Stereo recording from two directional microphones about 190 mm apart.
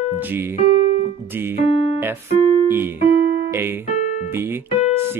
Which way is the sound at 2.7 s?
10° right (ahead or behind).